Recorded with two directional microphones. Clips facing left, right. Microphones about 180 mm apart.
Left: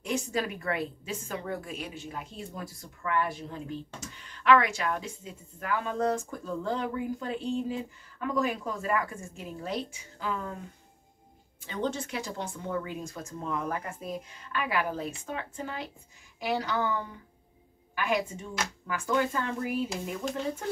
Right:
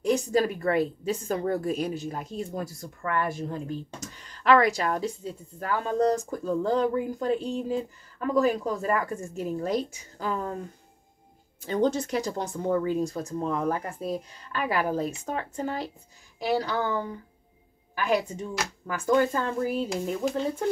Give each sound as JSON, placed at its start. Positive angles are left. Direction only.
{"t": 0.0, "sound": "a woman's voice", "side_deg": -40}
{"t": 11.6, "sound": "a woman's voice", "side_deg": -40}